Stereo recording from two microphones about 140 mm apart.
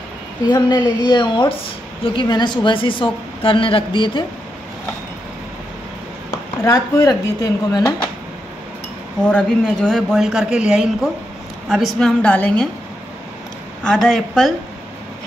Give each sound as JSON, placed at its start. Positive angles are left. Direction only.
{"t": 0.5, "sound": "a woman's voice", "side_deg": 30}
{"t": 6.6, "sound": "speech", "side_deg": 25}
{"t": 9.3, "sound": "a woman's voice", "side_deg": 5}
{"t": 13.8, "sound": "speech", "side_deg": 5}